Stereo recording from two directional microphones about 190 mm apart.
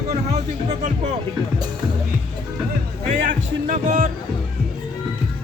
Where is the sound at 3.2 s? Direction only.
40° right (ahead or behind).